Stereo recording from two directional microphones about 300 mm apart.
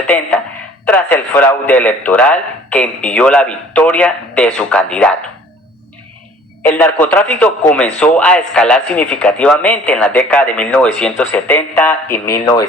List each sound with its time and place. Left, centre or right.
0.1 s a man's voice: centre
6.6 s a man's voice: centre